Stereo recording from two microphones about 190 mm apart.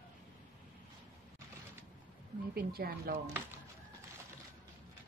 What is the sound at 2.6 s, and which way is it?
Speech, 55° right (ahead or behind).